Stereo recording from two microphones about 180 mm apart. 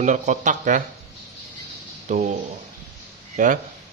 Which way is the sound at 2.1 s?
45° right (ahead or behind).